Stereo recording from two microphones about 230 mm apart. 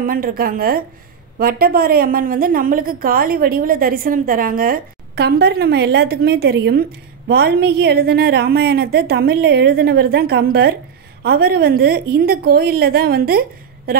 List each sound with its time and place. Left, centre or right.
0.0 s a woman's voice: right